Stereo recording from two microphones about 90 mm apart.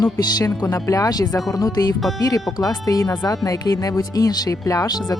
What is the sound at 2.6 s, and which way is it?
Speech, 40° left (ahead or behind).